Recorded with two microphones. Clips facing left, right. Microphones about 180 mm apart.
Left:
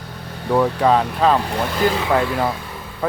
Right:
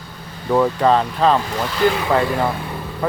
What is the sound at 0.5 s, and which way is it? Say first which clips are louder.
Speech: right 1 dB; centre (ahead or behind).